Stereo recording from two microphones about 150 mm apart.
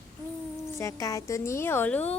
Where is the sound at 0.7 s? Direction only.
20° left (ahead or behind).